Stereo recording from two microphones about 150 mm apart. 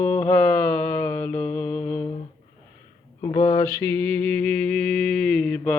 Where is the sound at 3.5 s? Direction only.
15° left (ahead or behind).